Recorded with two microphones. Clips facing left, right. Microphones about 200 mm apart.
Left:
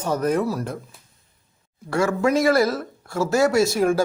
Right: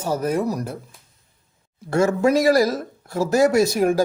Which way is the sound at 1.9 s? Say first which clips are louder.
Right 3 dB; 25° right (ahead or behind).